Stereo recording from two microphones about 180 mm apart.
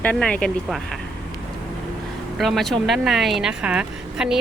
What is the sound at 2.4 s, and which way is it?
Speech, centre (ahead or behind).